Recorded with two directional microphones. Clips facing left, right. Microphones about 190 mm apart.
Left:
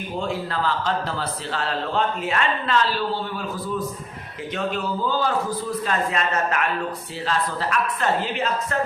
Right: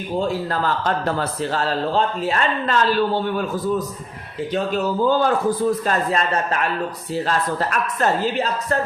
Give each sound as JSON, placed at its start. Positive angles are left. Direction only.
{"t": 0.2, "sound": "a man's voice", "side_deg": -45}
{"t": 4.5, "sound": "a man's voice", "side_deg": -45}
{"t": 7.3, "sound": "a man's voice", "side_deg": -45}